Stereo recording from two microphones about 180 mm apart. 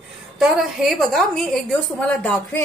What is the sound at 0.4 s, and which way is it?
A woman's voice, centre (ahead or behind).